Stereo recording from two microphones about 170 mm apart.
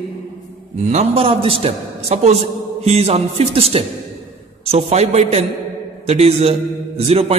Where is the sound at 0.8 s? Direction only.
35° right (ahead or behind).